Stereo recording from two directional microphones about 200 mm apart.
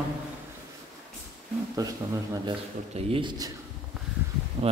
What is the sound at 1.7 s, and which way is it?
Speech, 15° right (ahead or behind).